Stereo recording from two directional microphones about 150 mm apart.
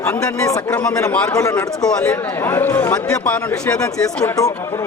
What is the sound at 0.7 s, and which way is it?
Speech, 5° left (ahead or behind).